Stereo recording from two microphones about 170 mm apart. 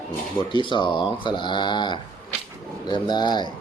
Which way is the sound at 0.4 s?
30° left (ahead or behind).